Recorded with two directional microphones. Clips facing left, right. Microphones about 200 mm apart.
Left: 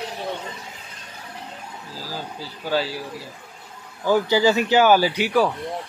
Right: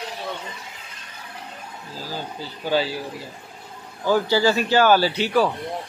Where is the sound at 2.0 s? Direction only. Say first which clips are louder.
Right 1 dB; 5° left (ahead or behind).